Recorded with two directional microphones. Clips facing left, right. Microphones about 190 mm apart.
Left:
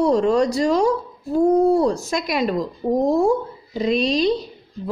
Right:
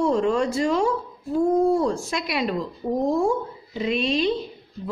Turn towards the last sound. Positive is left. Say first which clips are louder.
# left 3 dB
turn(degrees=40)  # may be behind; listen again after turning